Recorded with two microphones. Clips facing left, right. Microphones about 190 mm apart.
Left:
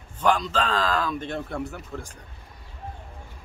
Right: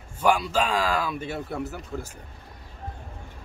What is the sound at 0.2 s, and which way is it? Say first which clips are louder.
A man's voice: right 1 dB; 10° right (ahead or behind).